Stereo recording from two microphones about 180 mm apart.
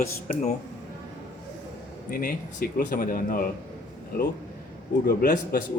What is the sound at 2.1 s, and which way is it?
Speech, 55° left (ahead or behind).